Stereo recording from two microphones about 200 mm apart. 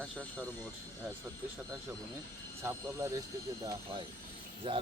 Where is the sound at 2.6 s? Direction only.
15° right (ahead or behind).